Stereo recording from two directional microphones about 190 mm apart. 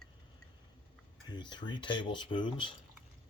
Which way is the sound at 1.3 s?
25° left (ahead or behind).